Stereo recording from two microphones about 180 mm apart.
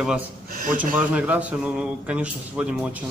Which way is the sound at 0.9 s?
5° right (ahead or behind).